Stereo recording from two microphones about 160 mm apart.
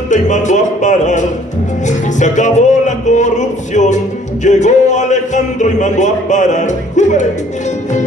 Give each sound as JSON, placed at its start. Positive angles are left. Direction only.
{"t": 0.1, "sound": "music", "side_deg": 50}